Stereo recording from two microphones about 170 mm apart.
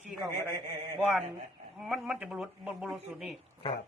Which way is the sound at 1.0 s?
Centre (ahead or behind).